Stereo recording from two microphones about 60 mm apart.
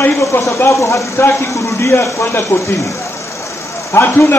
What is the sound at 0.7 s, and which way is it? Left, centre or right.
A man's voice, left.